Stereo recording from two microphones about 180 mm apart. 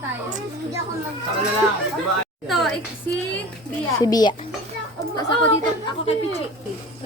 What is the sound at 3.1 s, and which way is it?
Speech, 10° left (ahead or behind).